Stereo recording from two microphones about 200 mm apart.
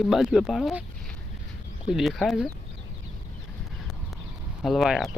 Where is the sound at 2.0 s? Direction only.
Centre (ahead or behind).